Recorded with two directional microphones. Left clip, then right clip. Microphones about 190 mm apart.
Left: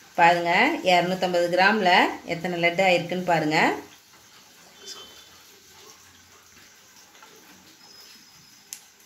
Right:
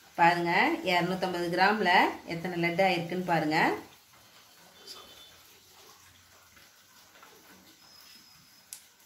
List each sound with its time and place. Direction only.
0.1 s speech: 45° left (ahead or behind)